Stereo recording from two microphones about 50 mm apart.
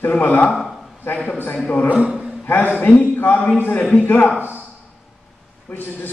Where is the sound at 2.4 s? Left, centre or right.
Left.